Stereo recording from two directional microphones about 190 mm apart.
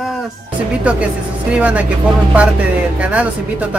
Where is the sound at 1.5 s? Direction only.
5° right (ahead or behind).